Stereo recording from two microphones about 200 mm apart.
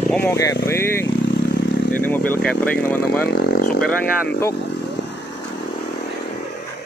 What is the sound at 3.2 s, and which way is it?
Speech, 50° left (ahead or behind).